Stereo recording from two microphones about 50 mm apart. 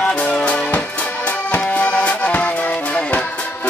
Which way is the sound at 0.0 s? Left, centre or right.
Left.